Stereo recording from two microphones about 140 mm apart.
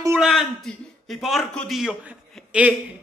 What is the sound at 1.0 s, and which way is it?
A man's voice, centre (ahead or behind).